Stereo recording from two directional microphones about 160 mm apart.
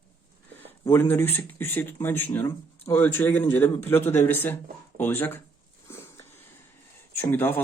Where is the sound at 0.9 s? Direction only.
15° left (ahead or behind).